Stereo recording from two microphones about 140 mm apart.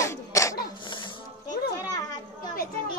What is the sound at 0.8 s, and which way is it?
Music, 35° left (ahead or behind).